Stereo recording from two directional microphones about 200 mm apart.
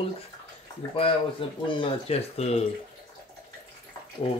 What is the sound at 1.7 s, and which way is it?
Speech, 25° left (ahead or behind).